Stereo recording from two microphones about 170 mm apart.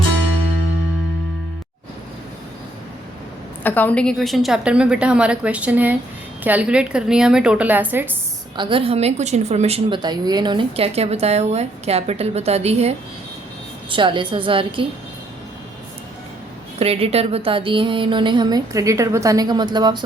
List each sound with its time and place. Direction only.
3.6 s a woman's voice: 10° left (ahead or behind); by 8.1 s 10° right (ahead or behind)
8.5 s a woman's voice: 30° right (ahead or behind)
13.9 s a woman's voice: 30° right (ahead or behind)
16.8 s a woman's voice: 35° right (ahead or behind)